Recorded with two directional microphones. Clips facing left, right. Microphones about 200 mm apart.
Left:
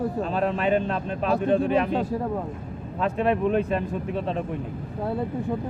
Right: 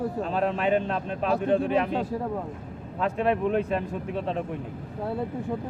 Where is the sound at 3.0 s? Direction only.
10° right (ahead or behind).